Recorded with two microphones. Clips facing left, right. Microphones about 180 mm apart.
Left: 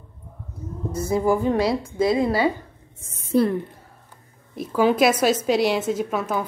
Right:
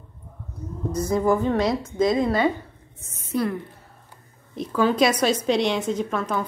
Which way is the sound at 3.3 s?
30° left (ahead or behind).